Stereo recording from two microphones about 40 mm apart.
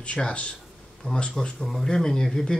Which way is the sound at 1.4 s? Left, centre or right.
Centre.